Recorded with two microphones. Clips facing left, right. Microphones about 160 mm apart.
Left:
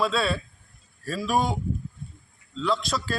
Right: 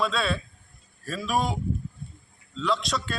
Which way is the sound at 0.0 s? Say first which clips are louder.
Left 2 dB; centre (ahead or behind).